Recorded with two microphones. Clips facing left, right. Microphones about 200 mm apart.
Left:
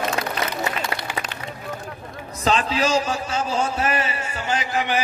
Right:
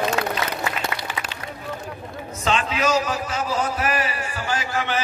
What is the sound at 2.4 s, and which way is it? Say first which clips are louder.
A man's voice: left 2 dB; 35° left (ahead or behind).